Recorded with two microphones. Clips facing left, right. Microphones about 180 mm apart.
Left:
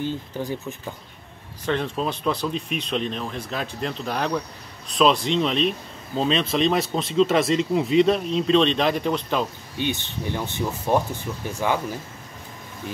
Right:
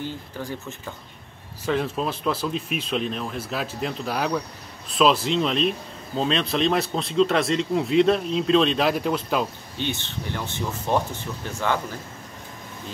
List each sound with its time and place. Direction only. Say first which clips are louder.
0.0 s speech: left 4 dB; 15° left (ahead or behind)
1.7 s speech: even; 5° right (ahead or behind)
9.8 s speech: left 2 dB; 15° left (ahead or behind)